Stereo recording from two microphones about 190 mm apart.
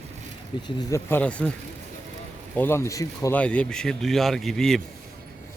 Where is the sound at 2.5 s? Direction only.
10° left (ahead or behind).